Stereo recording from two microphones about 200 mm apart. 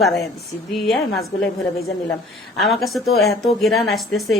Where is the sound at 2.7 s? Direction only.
Centre (ahead or behind).